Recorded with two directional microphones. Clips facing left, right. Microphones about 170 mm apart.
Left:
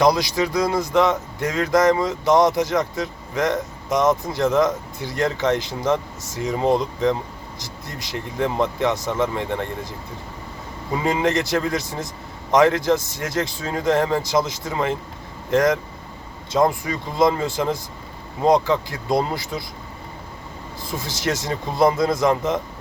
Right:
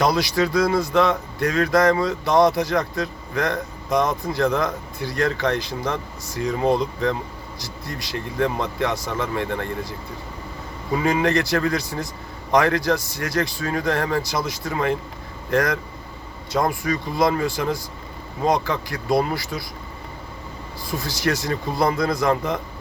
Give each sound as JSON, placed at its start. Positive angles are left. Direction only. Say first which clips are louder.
{"t": 0.0, "sound": "speech", "louder": "left 2 dB", "side_deg": 20}
{"t": 10.9, "sound": "speech", "louder": "right 1 dB", "side_deg": 20}
{"t": 20.8, "sound": "speech", "louder": "right 1 dB", "side_deg": 20}